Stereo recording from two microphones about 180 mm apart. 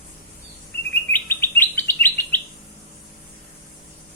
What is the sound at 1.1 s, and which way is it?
Chirp, 10° left (ahead or behind).